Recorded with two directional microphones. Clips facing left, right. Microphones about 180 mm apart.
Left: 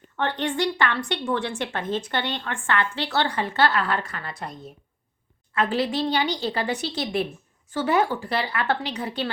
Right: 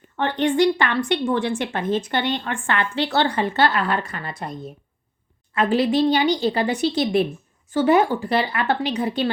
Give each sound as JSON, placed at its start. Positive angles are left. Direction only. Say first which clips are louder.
{"t": 0.2, "sound": "a woman's voice", "louder": "right 6 dB", "side_deg": -15}